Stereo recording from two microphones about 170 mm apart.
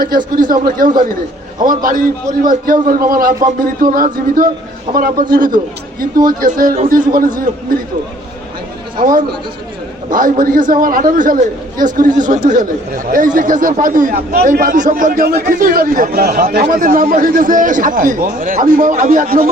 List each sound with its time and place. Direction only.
0.3 s a man's voice: 55° right (ahead or behind)
6.4 s a man's voice: 55° right (ahead or behind)
9.0 s a man's voice: 55° right (ahead or behind)